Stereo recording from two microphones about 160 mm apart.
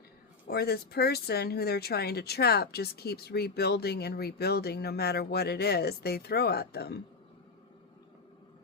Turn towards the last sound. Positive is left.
turn(degrees=90)